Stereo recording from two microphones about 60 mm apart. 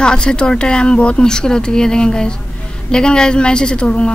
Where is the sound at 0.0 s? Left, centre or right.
Centre.